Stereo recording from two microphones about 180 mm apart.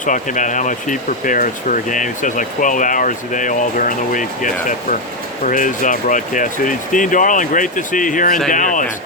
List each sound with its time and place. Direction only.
0.0 s speech: 45° left (ahead or behind)